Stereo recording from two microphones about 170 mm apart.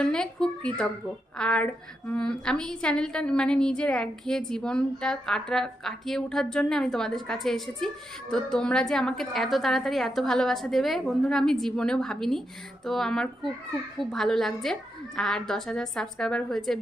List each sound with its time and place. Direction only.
0.0 s a woman's voice: 5° left (ahead or behind)